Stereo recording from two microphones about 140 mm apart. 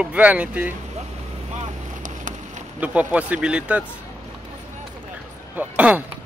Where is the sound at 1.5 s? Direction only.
60° right (ahead or behind).